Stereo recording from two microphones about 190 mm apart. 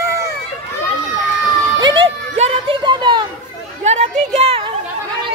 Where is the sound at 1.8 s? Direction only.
25° right (ahead or behind).